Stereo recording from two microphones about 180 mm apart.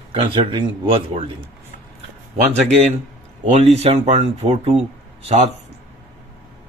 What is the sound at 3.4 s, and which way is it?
Speech, 35° right (ahead or behind).